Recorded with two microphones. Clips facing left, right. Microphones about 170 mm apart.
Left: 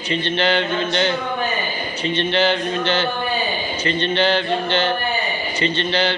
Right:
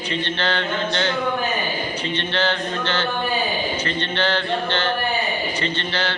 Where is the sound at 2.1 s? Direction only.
15° left (ahead or behind).